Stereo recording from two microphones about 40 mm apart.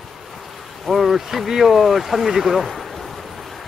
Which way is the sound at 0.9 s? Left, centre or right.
Centre.